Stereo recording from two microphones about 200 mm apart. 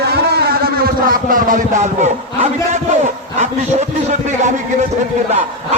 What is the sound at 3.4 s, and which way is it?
A man's voice, 35° right (ahead or behind).